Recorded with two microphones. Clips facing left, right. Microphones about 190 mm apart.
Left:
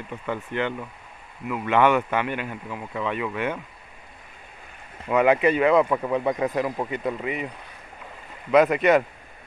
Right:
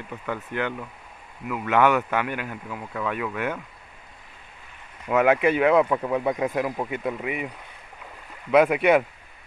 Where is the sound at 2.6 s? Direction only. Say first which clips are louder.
Even; 5° left (ahead or behind).